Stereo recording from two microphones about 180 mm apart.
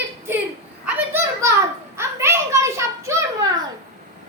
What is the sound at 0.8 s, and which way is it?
A child's voice, 15° right (ahead or behind).